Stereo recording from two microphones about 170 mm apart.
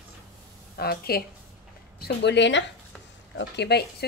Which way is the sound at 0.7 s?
65° left (ahead or behind).